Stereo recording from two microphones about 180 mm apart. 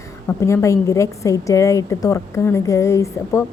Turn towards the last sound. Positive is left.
turn(degrees=15)  # may be behind; listen again after turning